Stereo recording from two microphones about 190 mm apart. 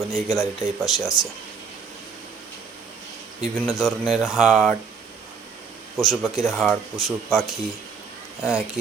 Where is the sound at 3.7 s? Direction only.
Centre (ahead or behind).